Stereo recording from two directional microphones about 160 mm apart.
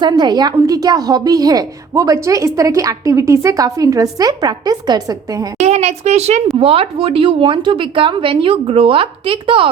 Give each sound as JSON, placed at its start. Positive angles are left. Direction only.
{"t": 0.0, "sound": "a woman's voice", "side_deg": -25}
{"t": 5.5, "sound": "a woman's voice", "side_deg": -45}